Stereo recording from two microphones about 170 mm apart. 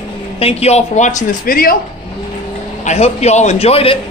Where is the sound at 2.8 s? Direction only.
40° left (ahead or behind).